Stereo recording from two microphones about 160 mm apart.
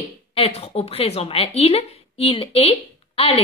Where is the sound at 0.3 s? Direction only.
35° left (ahead or behind).